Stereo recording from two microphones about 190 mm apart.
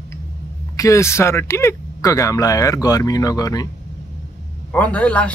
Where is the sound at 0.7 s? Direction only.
15° left (ahead or behind).